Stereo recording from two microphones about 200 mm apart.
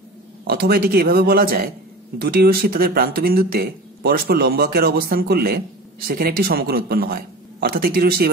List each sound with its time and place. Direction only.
0.5 s speech: 50° right (ahead or behind)